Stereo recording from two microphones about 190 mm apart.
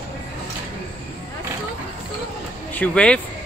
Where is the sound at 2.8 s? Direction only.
5° left (ahead or behind).